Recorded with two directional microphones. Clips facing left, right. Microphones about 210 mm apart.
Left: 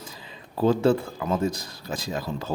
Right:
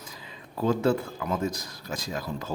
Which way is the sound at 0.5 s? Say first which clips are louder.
Left 4 dB; 30° left (ahead or behind).